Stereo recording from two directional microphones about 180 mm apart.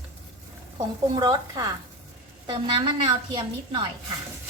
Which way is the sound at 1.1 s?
20° right (ahead or behind).